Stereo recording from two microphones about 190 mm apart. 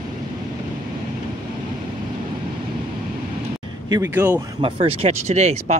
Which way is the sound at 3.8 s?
20° right (ahead or behind).